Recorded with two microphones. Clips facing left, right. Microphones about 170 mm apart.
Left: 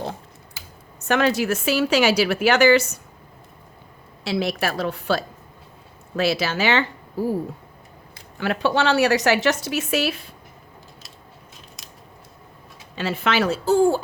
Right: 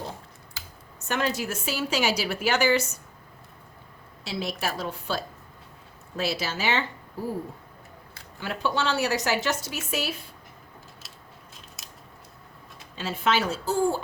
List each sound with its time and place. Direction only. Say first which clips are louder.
1.0 s a woman's voice: left 8 dB; 80° left
4.2 s a woman's voice: left 7 dB; 75° left (ahead or behind)
8.4 s speech: left 7 dB; 75° left (ahead or behind)
11.8 s scissors: left 2 dB; 5° right (ahead or behind)
13.0 s speech: left 4 dB; 75° left (ahead or behind)